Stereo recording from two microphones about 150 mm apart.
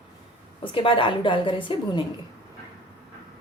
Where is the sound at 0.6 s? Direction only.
35° left (ahead or behind).